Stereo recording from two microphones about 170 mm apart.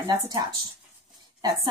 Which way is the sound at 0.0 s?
25° right (ahead or behind).